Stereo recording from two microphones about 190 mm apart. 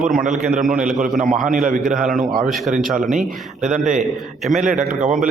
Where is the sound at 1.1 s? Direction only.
40° right (ahead or behind).